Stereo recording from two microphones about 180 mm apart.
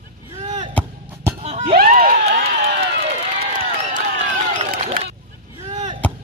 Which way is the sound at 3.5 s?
45° right (ahead or behind).